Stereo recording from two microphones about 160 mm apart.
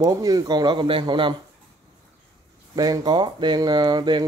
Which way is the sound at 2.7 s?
25° right (ahead or behind).